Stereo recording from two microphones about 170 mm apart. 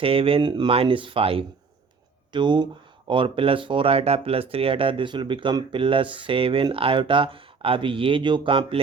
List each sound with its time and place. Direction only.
0.0 s speech: 35° right (ahead or behind)